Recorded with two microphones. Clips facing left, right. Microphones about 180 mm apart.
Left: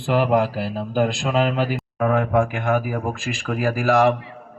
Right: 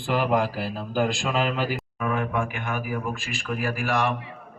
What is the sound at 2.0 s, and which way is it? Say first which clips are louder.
Speech: left 8 dB; 90° left.